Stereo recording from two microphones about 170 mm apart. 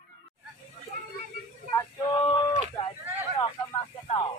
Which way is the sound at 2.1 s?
25° left (ahead or behind).